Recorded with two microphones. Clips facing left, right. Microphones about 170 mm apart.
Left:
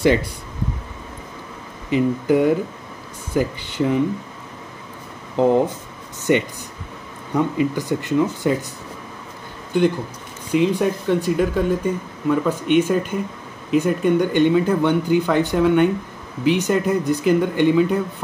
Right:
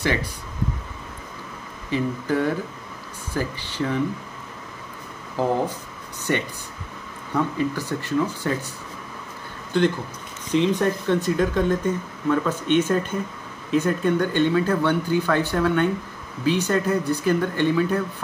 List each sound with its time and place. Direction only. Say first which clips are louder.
1.9 s speech: left 6 dB; 15° left (ahead or behind)
5.4 s speech: left 6 dB; 20° left (ahead or behind)
9.7 s speech: left 3 dB; 15° left (ahead or behind)